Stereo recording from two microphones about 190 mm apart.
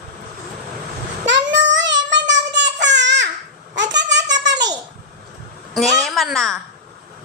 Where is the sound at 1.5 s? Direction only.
70° right (ahead or behind).